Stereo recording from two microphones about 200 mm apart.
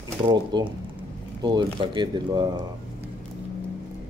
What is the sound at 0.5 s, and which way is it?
Speech, 20° right (ahead or behind).